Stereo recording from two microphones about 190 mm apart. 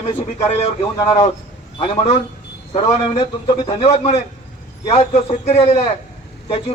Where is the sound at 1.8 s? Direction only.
30° left (ahead or behind).